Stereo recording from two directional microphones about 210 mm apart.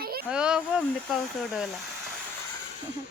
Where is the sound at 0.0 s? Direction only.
45° right (ahead or behind).